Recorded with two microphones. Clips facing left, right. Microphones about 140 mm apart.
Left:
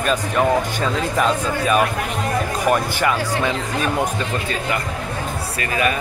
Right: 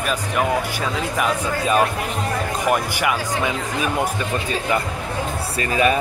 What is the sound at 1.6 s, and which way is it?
Speech, 25° right (ahead or behind).